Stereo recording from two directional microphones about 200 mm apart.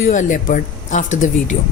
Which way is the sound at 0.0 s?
40° left (ahead or behind).